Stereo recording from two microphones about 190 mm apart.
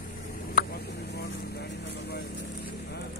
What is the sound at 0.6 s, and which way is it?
Vehicle, 55° left (ahead or behind).